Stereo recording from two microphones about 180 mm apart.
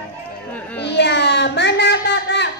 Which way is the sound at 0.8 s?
70° left (ahead or behind).